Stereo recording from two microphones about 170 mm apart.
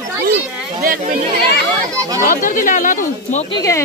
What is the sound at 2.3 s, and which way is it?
Speech, 50° left (ahead or behind).